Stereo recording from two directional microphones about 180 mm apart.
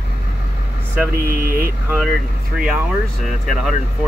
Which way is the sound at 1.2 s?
50° right (ahead or behind).